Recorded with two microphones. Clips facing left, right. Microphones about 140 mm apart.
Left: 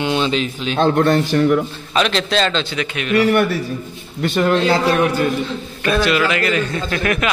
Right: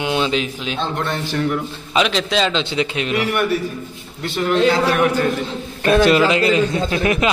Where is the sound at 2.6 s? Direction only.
25° right (ahead or behind).